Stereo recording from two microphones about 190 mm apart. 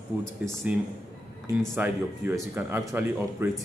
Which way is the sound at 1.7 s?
10° right (ahead or behind).